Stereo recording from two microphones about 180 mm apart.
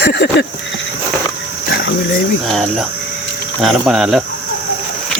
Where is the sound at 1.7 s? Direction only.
75° left (ahead or behind).